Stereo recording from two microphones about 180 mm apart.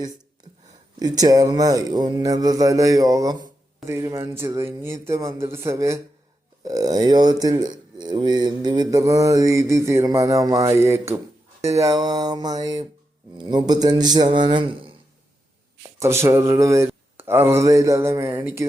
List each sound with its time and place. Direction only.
0.9 s mantra: 20° right (ahead or behind)
3.8 s speech: 15° right (ahead or behind)
6.7 s mantra: 20° right (ahead or behind)
16.0 s speech: 15° right (ahead or behind)